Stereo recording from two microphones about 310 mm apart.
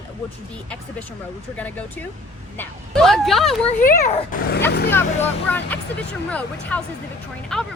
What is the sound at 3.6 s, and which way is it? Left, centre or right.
Speech, left.